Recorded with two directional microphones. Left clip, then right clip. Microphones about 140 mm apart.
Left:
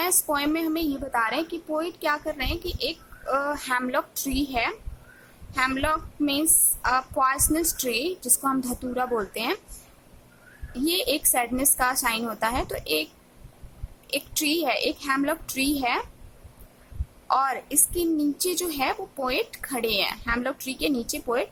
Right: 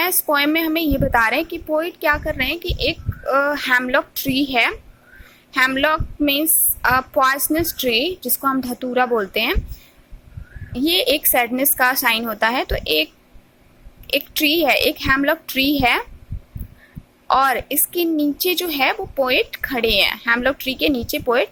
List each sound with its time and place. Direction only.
0.0 s a woman's voice: 15° right (ahead or behind)
10.7 s a woman's voice: 20° right (ahead or behind)
14.1 s a woman's voice: 15° right (ahead or behind)
17.2 s a woman's voice: 20° right (ahead or behind)